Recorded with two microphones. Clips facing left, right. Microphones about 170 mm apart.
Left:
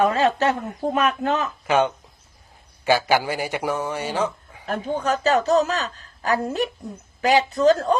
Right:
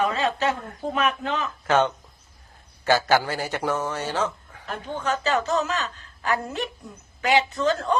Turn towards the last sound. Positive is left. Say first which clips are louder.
# left 6 dB
turn(degrees=35)  # may be behind; listen again after turning